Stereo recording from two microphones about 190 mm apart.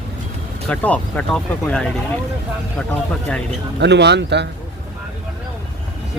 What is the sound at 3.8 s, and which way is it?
Speech, 65° right (ahead or behind).